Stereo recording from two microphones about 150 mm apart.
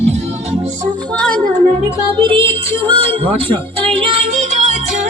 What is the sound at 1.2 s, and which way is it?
Music, 10° left (ahead or behind).